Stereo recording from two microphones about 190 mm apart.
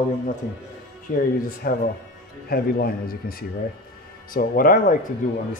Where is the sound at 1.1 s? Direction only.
50° left (ahead or behind).